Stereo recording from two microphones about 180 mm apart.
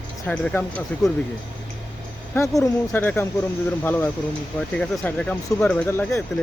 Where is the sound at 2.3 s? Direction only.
15° left (ahead or behind).